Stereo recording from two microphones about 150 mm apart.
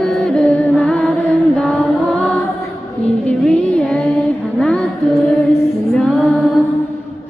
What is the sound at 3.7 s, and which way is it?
Child singing, 5° left (ahead or behind).